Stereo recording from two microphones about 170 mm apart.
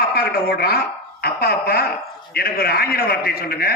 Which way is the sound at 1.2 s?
65° left (ahead or behind).